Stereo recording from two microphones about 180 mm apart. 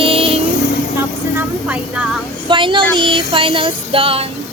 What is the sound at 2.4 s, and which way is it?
Child singing, 25° right (ahead or behind).